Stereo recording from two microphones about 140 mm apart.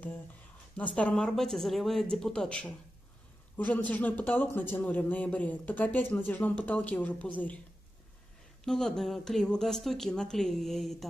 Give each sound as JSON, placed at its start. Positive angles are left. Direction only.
{"t": 0.7, "sound": "a man's voice", "side_deg": 10}
{"t": 8.6, "sound": "speech", "side_deg": 5}